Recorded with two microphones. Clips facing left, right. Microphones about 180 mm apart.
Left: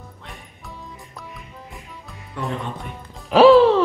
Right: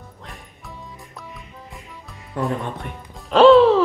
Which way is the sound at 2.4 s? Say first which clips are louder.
Right 4 dB; 45° right (ahead or behind).